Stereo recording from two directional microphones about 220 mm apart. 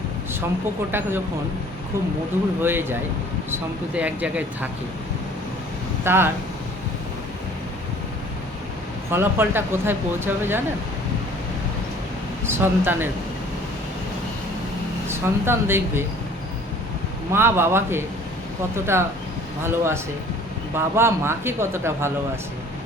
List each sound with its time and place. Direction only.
0.9 s speech: 10° right (ahead or behind)
2.6 s speech: 10° right (ahead or behind)
6.1 s speech: 10° right (ahead or behind)
9.1 s speech: 10° right (ahead or behind)
12.5 s speech: 10° right (ahead or behind)
15.0 s speech: 10° right (ahead or behind)
17.3 s speech: 10° right (ahead or behind)